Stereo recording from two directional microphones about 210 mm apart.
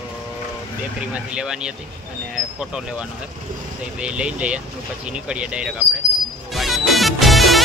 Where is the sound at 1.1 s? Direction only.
5° right (ahead or behind).